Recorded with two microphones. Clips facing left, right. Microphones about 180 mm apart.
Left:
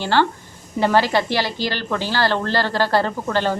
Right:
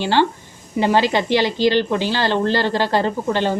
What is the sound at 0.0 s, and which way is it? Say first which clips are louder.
A woman's voice: right 1 dB; 15° right (ahead or behind).